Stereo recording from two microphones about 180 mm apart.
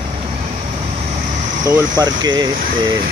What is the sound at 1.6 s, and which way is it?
Speech, 20° right (ahead or behind).